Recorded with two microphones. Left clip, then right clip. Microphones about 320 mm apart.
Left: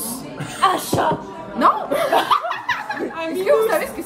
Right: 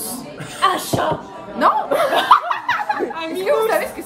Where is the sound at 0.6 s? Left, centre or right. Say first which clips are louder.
Even; centre.